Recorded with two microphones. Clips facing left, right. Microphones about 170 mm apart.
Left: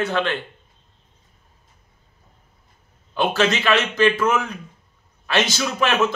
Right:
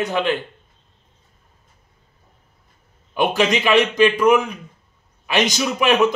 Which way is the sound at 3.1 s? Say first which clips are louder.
Right 2 dB; 15° right (ahead or behind).